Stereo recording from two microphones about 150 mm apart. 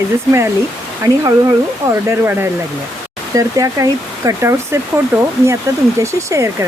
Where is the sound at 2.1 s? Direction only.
15° right (ahead or behind).